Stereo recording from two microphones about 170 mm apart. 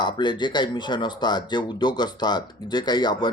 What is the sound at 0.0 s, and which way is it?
Speech, 25° left (ahead or behind).